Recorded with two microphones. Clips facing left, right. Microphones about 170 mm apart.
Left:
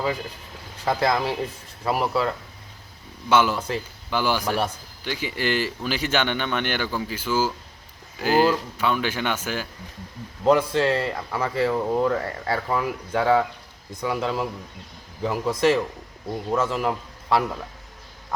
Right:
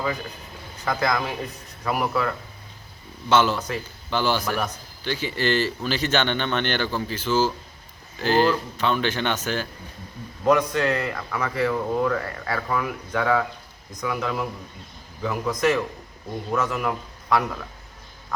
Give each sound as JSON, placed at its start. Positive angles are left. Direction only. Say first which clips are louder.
{"t": 0.9, "sound": "speech", "louder": "left 2 dB", "side_deg": 30}
{"t": 3.2, "sound": "speech", "louder": "even", "side_deg": 10}
{"t": 10.4, "sound": "a man's voice", "louder": "left 1 dB", "side_deg": 30}